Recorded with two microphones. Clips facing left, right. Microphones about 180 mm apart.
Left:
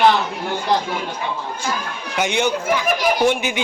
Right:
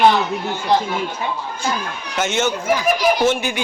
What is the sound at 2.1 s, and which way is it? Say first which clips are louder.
A man's voice: even; 15° left (ahead or behind).